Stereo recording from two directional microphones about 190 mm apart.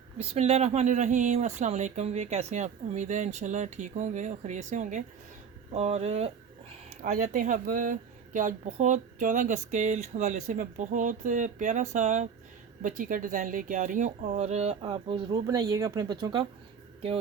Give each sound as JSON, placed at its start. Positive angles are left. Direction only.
{"t": 0.2, "sound": "speech", "side_deg": -35}